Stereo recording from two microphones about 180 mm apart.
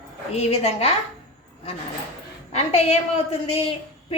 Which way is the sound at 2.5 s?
35° left (ahead or behind).